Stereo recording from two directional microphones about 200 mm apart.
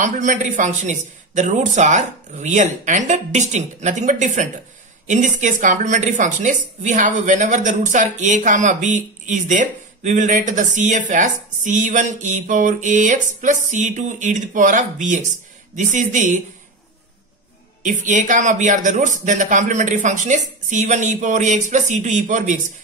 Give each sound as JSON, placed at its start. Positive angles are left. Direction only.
{"t": 0.0, "sound": "a woman's voice", "side_deg": -40}
{"t": 17.8, "sound": "a woman's voice", "side_deg": -40}